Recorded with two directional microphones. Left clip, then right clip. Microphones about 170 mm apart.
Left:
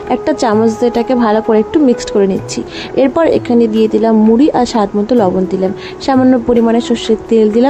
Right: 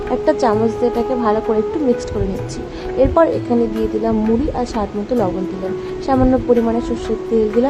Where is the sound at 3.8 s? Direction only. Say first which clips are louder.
Left 8 dB; 45° left (ahead or behind).